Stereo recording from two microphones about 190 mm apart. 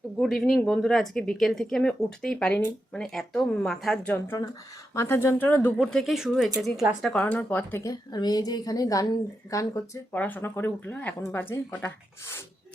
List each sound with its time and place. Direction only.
0.2 s speech: centre (ahead or behind)